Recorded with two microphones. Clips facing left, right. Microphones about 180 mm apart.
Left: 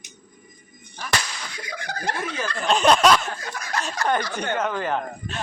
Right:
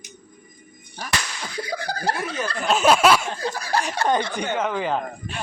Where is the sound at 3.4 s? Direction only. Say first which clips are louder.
Right 6 dB; 30° right (ahead or behind).